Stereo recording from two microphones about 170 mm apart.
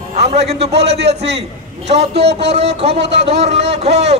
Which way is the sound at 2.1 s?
90° right.